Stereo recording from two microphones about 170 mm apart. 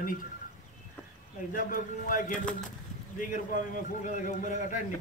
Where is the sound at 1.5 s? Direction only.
50° left (ahead or behind).